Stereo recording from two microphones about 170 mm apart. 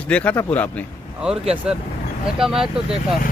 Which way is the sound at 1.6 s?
5° right (ahead or behind).